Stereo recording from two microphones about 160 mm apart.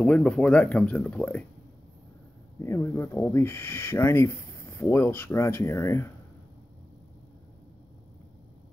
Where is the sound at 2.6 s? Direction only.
15° left (ahead or behind).